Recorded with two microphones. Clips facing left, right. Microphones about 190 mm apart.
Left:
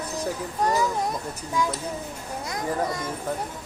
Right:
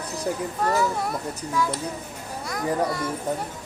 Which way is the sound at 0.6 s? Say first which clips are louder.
Left 1 dB; 15° left (ahead or behind).